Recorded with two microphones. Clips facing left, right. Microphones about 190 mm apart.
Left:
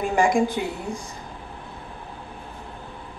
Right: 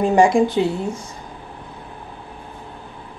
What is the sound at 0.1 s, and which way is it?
Speech, 25° right (ahead or behind).